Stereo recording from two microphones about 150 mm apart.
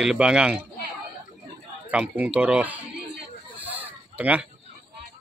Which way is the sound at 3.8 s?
10° right (ahead or behind).